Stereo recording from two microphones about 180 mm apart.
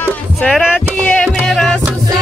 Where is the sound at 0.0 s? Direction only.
5° left (ahead or behind).